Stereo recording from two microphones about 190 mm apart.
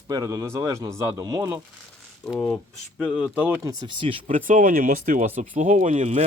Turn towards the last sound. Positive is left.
turn(degrees=-40)  # may be behind; listen again after turning